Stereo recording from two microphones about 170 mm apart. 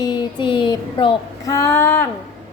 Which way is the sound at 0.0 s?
25° left (ahead or behind).